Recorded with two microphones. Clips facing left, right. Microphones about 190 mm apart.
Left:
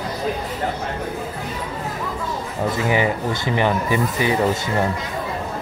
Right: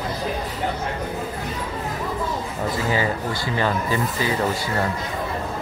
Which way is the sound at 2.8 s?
15° left (ahead or behind).